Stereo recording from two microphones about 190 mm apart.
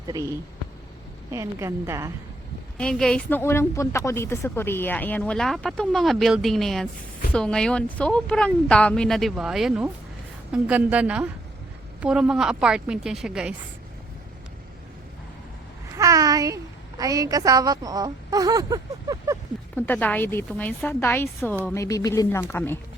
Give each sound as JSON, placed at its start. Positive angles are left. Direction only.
{"t": 1.3, "sound": "a woman's voice", "side_deg": -15}
{"t": 2.7, "sound": "a woman's voice", "side_deg": 5}
{"t": 16.0, "sound": "a sound", "side_deg": -20}
{"t": 17.0, "sound": "a woman's voice", "side_deg": -20}
{"t": 19.7, "sound": "a woman's voice", "side_deg": 10}